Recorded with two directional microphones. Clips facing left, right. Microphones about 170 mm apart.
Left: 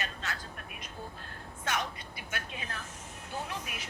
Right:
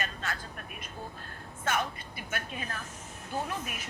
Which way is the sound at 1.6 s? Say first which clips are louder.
Right 3 dB; 50° right (ahead or behind).